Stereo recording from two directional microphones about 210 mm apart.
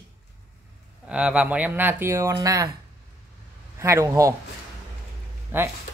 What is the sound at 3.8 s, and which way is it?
Speech, 15° right (ahead or behind).